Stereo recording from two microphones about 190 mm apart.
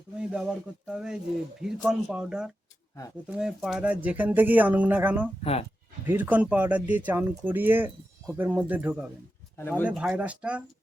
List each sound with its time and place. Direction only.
0.2 s speech: 5° right (ahead or behind)
5.4 s speech: 30° left (ahead or behind)
6.1 s speech: 10° right (ahead or behind)
9.6 s speech: 10° left (ahead or behind)
9.8 s speech: 5° right (ahead or behind)